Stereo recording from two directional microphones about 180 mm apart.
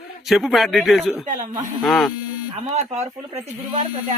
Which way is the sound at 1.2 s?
45° right (ahead or behind).